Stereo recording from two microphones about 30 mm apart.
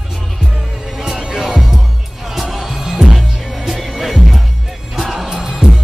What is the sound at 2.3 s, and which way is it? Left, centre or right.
Music, centre.